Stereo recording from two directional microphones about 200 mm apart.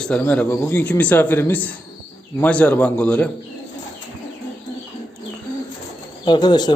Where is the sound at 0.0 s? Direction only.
5° left (ahead or behind).